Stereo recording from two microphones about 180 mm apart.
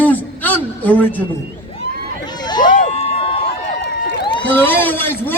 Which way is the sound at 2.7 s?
35° left (ahead or behind).